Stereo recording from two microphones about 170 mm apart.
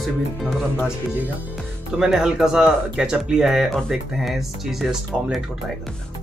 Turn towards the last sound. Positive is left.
turn(degrees=0)  # may be behind; listen again after turning